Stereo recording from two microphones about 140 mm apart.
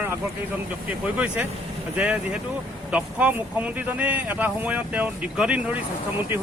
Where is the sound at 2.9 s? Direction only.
10° right (ahead or behind).